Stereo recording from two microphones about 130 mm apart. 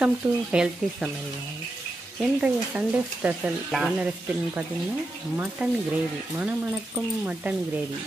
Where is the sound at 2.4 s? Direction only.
10° right (ahead or behind).